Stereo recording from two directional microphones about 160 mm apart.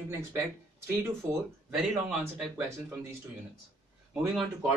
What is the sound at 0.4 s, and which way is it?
Speech, 15° right (ahead or behind).